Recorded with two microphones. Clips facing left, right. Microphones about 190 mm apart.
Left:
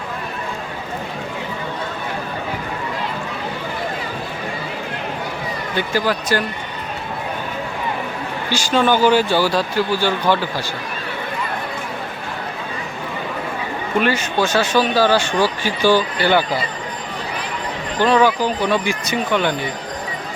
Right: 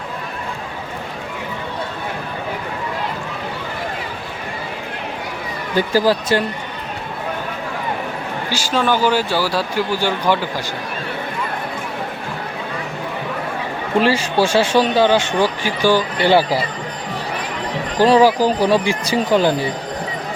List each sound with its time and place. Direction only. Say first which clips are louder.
5.7 s speech: right 5 dB; 35° right (ahead or behind)
8.4 s speech: left 2 dB; 5° right (ahead or behind)
14.0 s speech: right 3 dB; 30° right (ahead or behind); by 16.0 s 15° right (ahead or behind)
16.1 s speech: right 3 dB; 30° right (ahead or behind)
18.0 s speech: right 3 dB; 35° right (ahead or behind)